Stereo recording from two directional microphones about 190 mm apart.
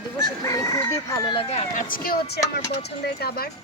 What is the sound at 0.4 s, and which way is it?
Chicken, 15° left (ahead or behind).